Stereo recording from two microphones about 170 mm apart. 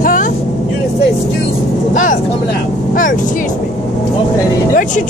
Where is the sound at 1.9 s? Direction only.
50° left (ahead or behind).